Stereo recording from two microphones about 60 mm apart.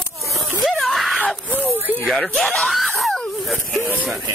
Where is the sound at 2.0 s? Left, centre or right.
Centre.